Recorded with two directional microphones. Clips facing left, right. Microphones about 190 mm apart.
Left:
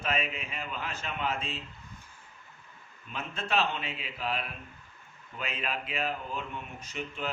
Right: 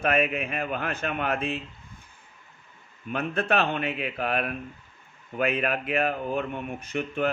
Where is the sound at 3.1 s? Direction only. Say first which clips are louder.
Right 8 dB; 60° right (ahead or behind).